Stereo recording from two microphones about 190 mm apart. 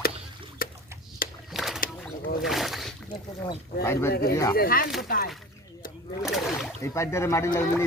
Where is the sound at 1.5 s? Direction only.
Centre (ahead or behind).